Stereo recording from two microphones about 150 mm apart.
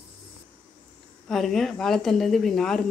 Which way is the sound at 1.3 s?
Centre (ahead or behind).